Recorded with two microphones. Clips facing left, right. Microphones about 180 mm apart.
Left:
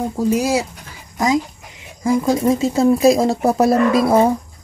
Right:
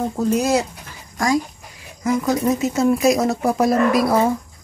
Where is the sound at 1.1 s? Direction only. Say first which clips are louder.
Left 2 dB; 20° left (ahead or behind).